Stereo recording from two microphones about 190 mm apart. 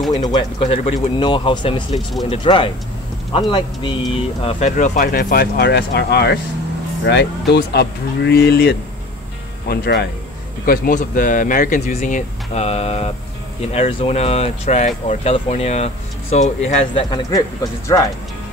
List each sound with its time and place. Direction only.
0.1 s speech: 25° left (ahead or behind)
17.1 s speech: 20° left (ahead or behind)